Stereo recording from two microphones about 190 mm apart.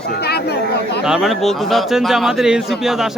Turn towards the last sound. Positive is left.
turn(degrees=0)  # may be behind; listen again after turning